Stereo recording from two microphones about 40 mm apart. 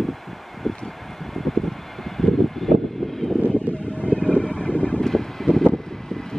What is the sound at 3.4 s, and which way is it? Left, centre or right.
Vehicle, left.